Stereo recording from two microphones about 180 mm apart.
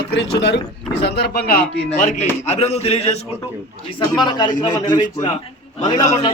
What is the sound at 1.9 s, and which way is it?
A man's voice, 35° left (ahead or behind).